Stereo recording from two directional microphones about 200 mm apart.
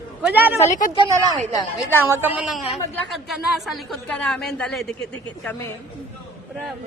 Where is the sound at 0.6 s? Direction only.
40° left (ahead or behind).